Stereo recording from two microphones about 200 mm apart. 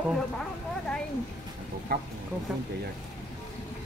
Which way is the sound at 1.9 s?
50° right (ahead or behind).